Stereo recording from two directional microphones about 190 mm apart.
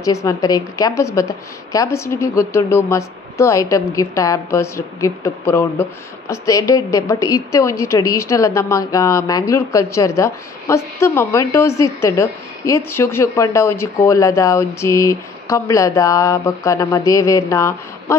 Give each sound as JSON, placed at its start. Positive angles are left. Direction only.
{"t": 0.0, "sound": "a woman's voice", "side_deg": 15}